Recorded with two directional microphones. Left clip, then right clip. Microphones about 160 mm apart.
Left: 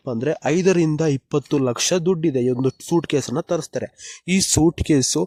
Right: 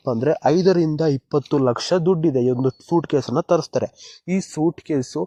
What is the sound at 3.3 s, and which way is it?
Speech, centre (ahead or behind).